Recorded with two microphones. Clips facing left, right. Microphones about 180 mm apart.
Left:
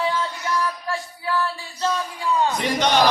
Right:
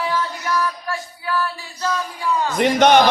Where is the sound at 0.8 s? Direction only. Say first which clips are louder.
Even; 25° left (ahead or behind).